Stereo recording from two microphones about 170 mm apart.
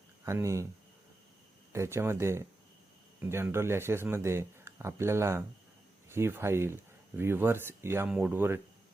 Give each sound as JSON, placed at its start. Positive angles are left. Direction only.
{"t": 0.3, "sound": "speech", "side_deg": -15}
{"t": 1.7, "sound": "speech", "side_deg": -15}